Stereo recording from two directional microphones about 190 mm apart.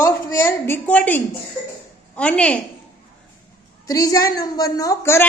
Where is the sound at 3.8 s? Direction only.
20° left (ahead or behind).